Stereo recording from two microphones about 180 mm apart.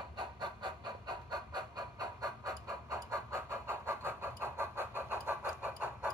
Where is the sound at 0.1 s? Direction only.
25° right (ahead or behind).